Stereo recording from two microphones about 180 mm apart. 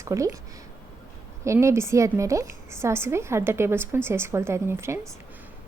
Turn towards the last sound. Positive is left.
turn(degrees=-15)  # may be behind; listen again after turning